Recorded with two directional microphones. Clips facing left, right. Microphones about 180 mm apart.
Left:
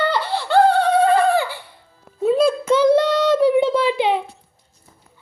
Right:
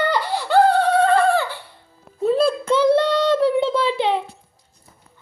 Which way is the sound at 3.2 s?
5° left (ahead or behind).